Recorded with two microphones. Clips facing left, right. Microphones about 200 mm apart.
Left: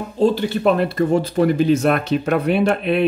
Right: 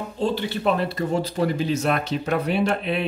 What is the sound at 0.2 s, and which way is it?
Speech, 45° left (ahead or behind).